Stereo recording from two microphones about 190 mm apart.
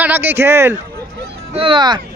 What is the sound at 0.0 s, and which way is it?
Speech, 10° right (ahead or behind).